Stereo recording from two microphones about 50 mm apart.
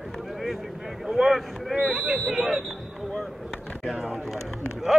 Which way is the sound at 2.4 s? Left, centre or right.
Right.